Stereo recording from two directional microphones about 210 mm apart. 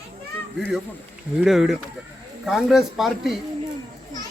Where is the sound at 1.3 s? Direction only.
Centre (ahead or behind).